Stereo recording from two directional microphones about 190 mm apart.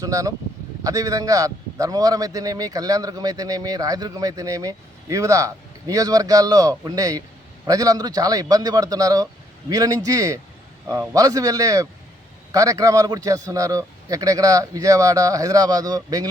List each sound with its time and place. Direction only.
0.0 s a man's voice: 15° right (ahead or behind)